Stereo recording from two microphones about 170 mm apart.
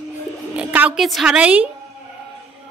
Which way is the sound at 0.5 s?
10° right (ahead or behind).